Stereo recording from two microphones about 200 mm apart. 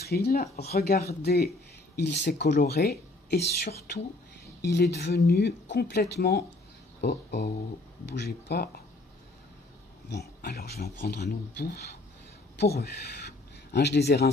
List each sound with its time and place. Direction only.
0.0 s speech: 50° left (ahead or behind)
10.1 s speech: 50° left (ahead or behind)